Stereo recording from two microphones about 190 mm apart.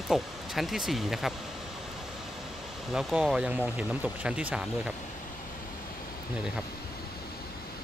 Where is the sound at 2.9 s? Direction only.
Centre (ahead or behind).